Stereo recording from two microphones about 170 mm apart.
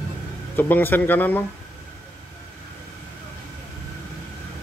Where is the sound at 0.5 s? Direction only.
10° left (ahead or behind).